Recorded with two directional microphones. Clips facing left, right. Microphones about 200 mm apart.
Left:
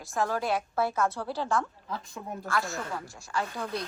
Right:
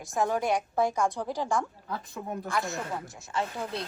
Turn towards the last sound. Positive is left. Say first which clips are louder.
# even
turn(degrees=-25)  # may be behind; listen again after turning